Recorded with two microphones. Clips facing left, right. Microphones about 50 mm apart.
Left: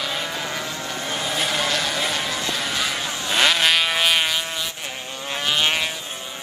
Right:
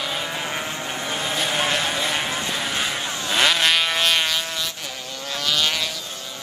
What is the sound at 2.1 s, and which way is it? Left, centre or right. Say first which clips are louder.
Vehicle: even; right.